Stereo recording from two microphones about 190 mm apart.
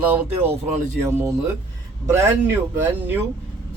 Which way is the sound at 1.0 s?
15° right (ahead or behind).